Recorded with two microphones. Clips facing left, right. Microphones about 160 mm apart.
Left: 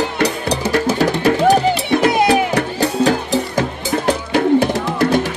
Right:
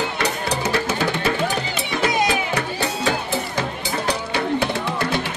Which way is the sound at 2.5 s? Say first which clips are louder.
Left 7 dB; 40° left (ahead or behind).